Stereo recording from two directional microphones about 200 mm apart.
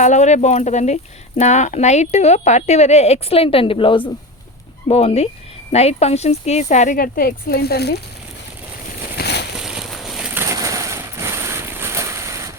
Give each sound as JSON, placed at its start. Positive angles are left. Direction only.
{"t": 0.0, "sound": "speech", "side_deg": 35}
{"t": 9.1, "sound": "a sound", "side_deg": 55}
{"t": 9.6, "sound": "boat", "side_deg": 0}
{"t": 10.4, "sound": "vehicle", "side_deg": -15}